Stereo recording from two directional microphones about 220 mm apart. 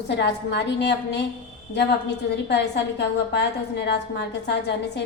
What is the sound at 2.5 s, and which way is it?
A woman's voice, 50° left (ahead or behind).